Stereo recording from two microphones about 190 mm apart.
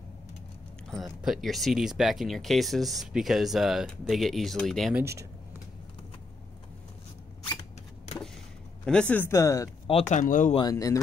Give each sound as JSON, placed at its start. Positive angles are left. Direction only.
{"t": 0.8, "sound": "speech", "side_deg": 0}
{"t": 9.1, "sound": "speech", "side_deg": 15}
{"t": 9.8, "sound": "speech", "side_deg": 35}
{"t": 10.5, "sound": "speech", "side_deg": 20}